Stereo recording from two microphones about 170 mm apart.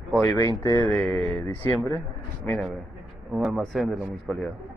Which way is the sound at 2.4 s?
10° left (ahead or behind).